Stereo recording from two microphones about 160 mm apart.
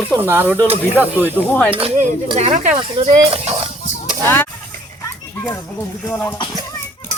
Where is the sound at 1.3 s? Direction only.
10° left (ahead or behind).